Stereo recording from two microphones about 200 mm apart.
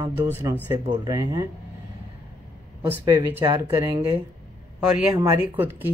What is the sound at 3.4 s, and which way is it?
Speech, 20° right (ahead or behind).